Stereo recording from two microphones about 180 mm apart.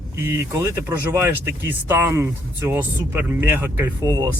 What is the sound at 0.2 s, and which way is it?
Speech, 15° right (ahead or behind).